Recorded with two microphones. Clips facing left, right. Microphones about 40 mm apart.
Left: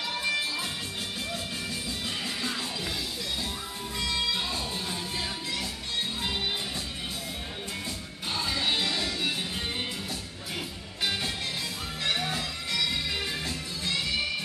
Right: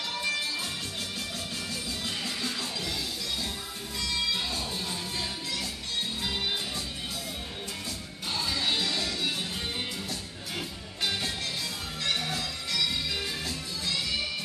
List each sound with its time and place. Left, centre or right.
0.2 s music: centre
4.0 s music: centre
8.3 s music: centre
11.0 s music: centre